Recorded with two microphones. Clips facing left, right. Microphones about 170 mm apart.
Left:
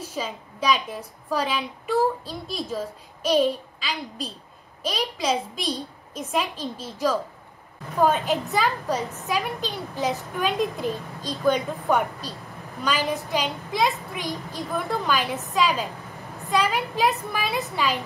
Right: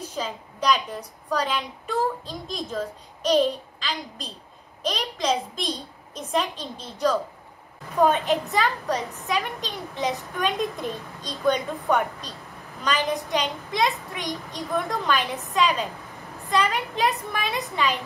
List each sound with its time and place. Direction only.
0.1 s a child's voice: 5° left (ahead or behind)